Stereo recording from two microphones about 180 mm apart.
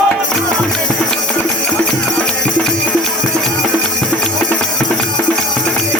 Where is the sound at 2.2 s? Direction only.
5° left (ahead or behind).